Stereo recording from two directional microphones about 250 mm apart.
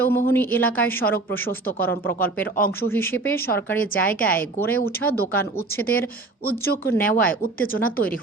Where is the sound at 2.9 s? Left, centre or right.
Centre.